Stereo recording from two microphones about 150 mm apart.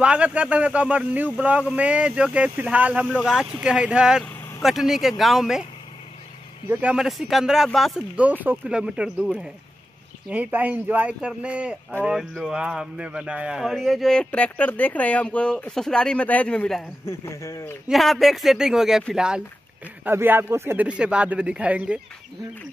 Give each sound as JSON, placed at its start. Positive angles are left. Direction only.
{"t": 0.0, "sound": "speech", "side_deg": -10}
{"t": 6.7, "sound": "speech", "side_deg": -10}
{"t": 17.0, "sound": "speech", "side_deg": 20}
{"t": 17.8, "sound": "speech", "side_deg": 0}